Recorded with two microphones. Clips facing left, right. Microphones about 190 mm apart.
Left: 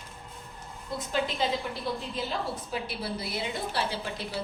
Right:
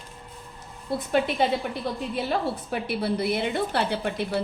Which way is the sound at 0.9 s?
60° right (ahead or behind).